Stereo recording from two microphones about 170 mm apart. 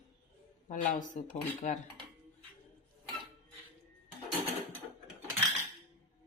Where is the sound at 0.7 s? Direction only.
50° left (ahead or behind).